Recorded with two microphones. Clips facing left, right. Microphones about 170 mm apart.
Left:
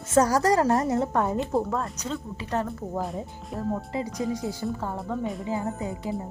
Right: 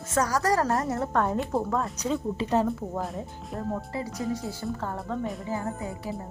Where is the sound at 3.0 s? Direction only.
Centre (ahead or behind).